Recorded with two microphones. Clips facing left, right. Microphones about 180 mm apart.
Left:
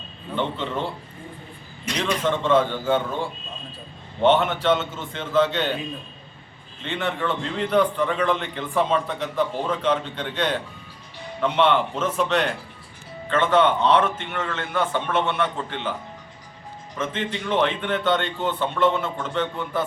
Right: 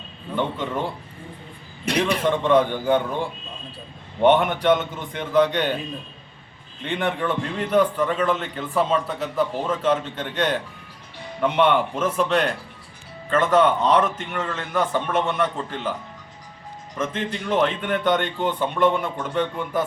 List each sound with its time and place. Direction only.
0.3 s speech: 10° right (ahead or behind)
1.8 s a man's voice: 60° right (ahead or behind)
2.2 s speech: 15° right (ahead or behind)
6.8 s a man's voice: 15° right (ahead or behind)
17.0 s speech: 10° right (ahead or behind)